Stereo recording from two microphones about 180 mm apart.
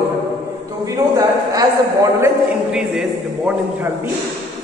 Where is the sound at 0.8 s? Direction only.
20° right (ahead or behind).